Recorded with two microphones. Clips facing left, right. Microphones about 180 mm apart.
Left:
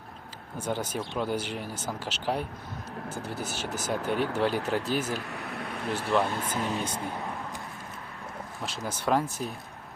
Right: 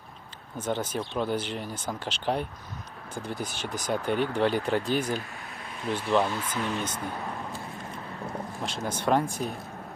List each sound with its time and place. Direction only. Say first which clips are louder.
0.6 s speech: right 1 dB; 10° left (ahead or behind)
5.3 s a sound: left 6 dB; 70° left (ahead or behind)
5.9 s speech: right 2 dB; 5° left (ahead or behind)
6.6 s speech: right 1 dB; 40° left (ahead or behind)
8.6 s speech: right 2 dB; 5° left (ahead or behind)